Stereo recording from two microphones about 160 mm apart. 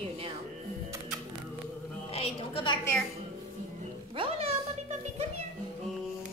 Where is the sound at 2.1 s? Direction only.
35° left (ahead or behind).